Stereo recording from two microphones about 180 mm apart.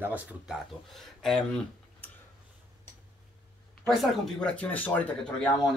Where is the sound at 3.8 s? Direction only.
Centre (ahead or behind).